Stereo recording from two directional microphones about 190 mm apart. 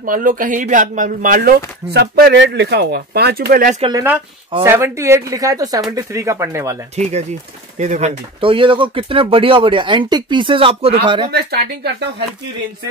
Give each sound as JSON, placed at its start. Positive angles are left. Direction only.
{"t": 0.0, "sound": "speech", "side_deg": -45}
{"t": 4.6, "sound": "speech", "side_deg": -15}
{"t": 7.0, "sound": "speech", "side_deg": -35}
{"t": 11.3, "sound": "speech", "side_deg": -60}